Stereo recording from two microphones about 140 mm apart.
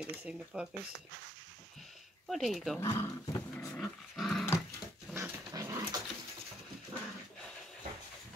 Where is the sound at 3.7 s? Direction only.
Centre (ahead or behind).